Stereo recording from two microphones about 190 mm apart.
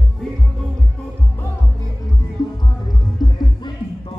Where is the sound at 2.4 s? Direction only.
20° left (ahead or behind).